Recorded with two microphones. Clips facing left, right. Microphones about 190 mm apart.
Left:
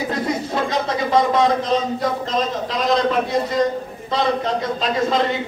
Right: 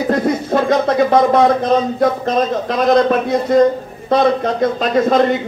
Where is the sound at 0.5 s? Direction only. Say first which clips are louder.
Right 7 dB; 55° right (ahead or behind).